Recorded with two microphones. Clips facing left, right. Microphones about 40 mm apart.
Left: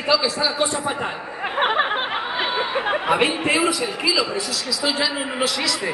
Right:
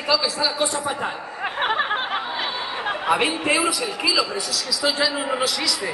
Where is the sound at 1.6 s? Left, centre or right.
Centre.